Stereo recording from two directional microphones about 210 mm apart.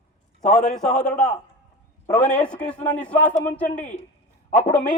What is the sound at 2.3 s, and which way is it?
A man's voice, 5° left (ahead or behind).